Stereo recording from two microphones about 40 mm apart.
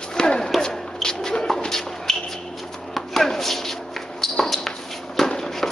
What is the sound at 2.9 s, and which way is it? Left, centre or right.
Chopping, centre.